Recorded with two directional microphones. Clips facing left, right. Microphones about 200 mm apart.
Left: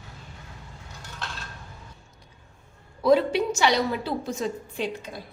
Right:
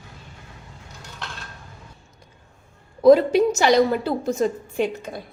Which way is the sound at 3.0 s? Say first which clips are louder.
Right 7 dB; 45° right (ahead or behind).